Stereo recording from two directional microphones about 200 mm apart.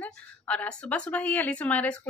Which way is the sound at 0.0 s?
5° left (ahead or behind).